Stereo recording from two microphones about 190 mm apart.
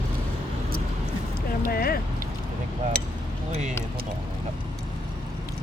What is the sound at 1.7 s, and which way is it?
Speech, 55° left (ahead or behind).